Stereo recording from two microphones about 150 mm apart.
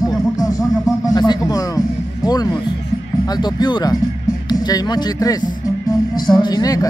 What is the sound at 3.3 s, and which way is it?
Speech, 30° left (ahead or behind).